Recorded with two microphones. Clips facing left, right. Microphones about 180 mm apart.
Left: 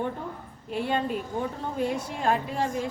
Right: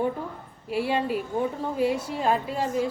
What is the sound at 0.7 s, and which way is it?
A woman's voice, 5° right (ahead or behind).